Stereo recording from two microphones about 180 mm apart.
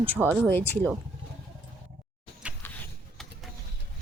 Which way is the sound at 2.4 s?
5° right (ahead or behind).